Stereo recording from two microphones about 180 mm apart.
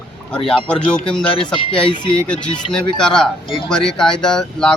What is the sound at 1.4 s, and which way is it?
Speech, 25° left (ahead or behind).